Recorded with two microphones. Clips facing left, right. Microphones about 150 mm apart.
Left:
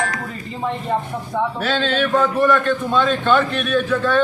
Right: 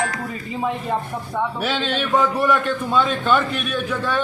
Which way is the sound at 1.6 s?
15° right (ahead or behind).